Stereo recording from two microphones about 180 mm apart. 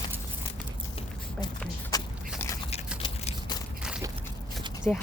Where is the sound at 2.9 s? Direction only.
35° left (ahead or behind).